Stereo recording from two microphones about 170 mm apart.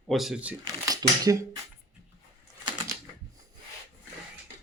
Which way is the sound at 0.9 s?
20° right (ahead or behind).